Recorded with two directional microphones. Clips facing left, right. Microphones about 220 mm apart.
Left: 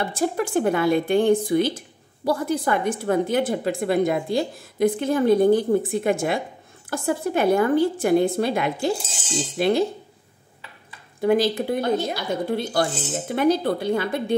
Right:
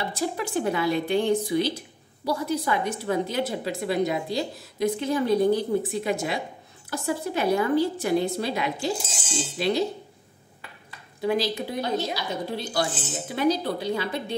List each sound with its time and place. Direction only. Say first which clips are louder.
0.0 s a woman's voice: left 5 dB; 50° left (ahead or behind)
11.1 s a woman's voice: left 6 dB; 50° left (ahead or behind)